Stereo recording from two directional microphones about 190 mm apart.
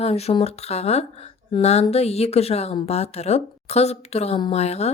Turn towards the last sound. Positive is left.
turn(degrees=35)  # may be behind; listen again after turning